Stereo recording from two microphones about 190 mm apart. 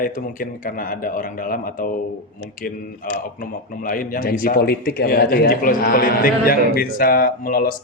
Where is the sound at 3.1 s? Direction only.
45° left (ahead or behind).